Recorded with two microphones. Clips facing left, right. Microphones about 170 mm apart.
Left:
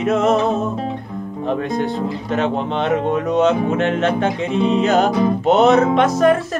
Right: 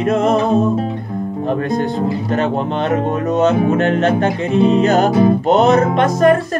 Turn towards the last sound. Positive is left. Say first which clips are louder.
# right 1 dB
turn(degrees=0)  # may be behind; listen again after turning